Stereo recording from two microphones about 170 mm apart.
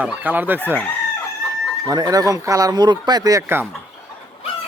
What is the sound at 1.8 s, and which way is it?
Speech, 20° right (ahead or behind).